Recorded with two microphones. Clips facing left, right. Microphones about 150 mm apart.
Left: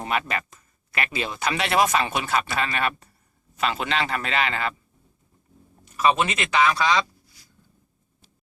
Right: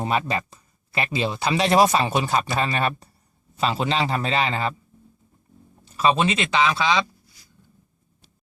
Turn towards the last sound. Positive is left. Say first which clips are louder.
# even
turn(degrees=-25)  # may be behind; listen again after turning